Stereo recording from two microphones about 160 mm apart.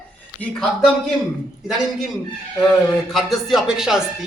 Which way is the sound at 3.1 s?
Centre (ahead or behind).